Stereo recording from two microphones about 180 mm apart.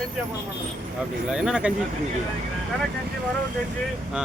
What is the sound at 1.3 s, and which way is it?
Speech, 5° right (ahead or behind).